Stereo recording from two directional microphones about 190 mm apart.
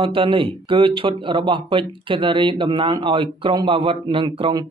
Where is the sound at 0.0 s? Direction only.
25° right (ahead or behind).